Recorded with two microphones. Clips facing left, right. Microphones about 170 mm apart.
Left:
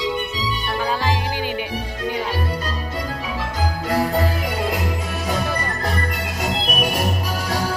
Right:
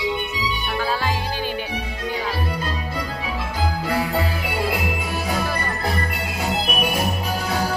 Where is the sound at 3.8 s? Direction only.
40° left (ahead or behind).